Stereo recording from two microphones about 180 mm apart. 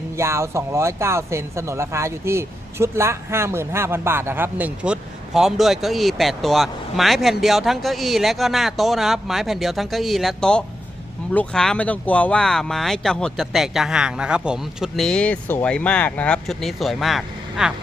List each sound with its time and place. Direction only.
0.2 s speech: 15° right (ahead or behind)